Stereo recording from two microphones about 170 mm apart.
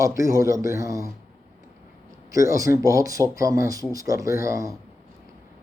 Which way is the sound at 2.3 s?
20° right (ahead or behind).